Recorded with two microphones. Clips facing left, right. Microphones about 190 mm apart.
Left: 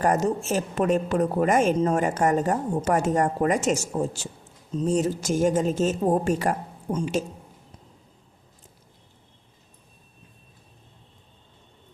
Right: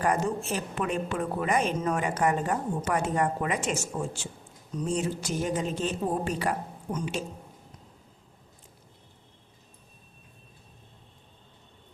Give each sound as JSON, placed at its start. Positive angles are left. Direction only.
{"t": 0.0, "sound": "a woman's voice", "side_deg": 40}